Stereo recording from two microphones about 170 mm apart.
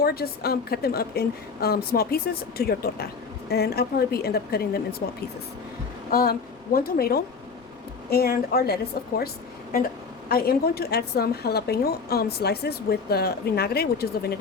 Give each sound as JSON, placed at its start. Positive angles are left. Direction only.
{"t": 0.0, "sound": "a woman's voice", "side_deg": 65}
{"t": 6.1, "sound": "a woman's voice", "side_deg": 60}